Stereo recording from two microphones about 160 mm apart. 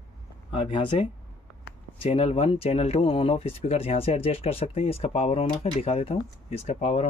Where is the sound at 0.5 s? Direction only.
35° left (ahead or behind).